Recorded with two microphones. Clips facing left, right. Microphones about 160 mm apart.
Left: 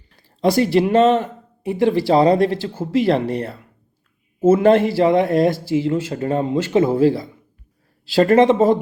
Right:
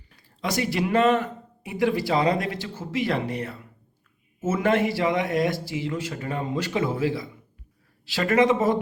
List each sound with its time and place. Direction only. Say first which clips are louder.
0.2 s speech: left 10 dB; 30° left (ahead or behind)